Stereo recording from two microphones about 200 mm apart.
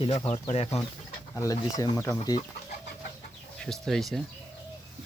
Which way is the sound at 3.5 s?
Centre (ahead or behind).